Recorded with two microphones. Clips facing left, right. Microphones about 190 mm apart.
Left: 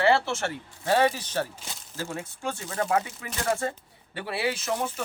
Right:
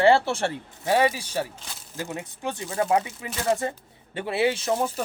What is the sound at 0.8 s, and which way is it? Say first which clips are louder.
Speech: right 1 dB; 15° right (ahead or behind).